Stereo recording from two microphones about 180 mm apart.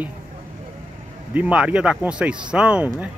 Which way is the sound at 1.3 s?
5° right (ahead or behind).